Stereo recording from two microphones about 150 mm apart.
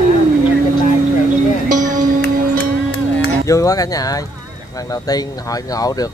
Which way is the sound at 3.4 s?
20° left (ahead or behind).